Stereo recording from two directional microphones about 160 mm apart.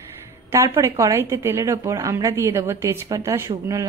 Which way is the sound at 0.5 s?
15° right (ahead or behind).